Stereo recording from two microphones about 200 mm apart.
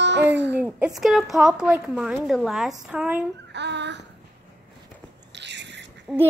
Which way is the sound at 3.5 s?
60° right (ahead or behind).